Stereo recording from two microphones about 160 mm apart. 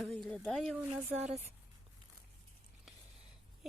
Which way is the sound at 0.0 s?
5° left (ahead or behind).